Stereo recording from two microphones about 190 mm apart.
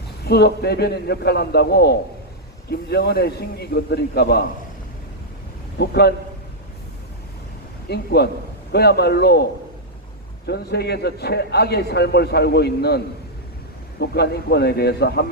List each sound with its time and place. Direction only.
0.3 s a man's voice: 60° left (ahead or behind)
5.7 s a man's voice: 60° left (ahead or behind)
7.9 s a man's voice: 60° left (ahead or behind)
14.0 s a man's voice: 60° left (ahead or behind)